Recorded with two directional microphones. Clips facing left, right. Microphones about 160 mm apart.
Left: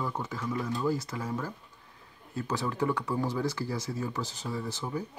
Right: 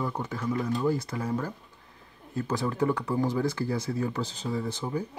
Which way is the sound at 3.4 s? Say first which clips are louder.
Right 4 dB; 55° right (ahead or behind).